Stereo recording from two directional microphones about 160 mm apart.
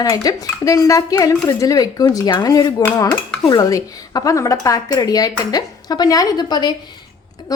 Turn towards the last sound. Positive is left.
turn(degrees=20)  # may be behind; listen again after turning